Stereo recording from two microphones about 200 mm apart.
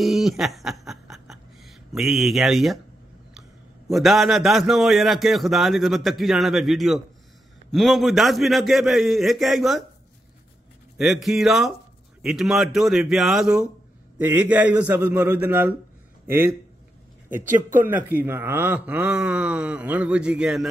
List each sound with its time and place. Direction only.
0.0 s chuckle: centre (ahead or behind)
3.9 s a man's voice: centre (ahead or behind)
11.0 s a man's voice: centre (ahead or behind)
17.5 s speech: 40° right (ahead or behind)
17.8 s speech: 10° right (ahead or behind)